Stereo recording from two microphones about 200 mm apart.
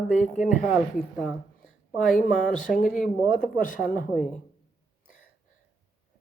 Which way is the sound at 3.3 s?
40° left (ahead or behind).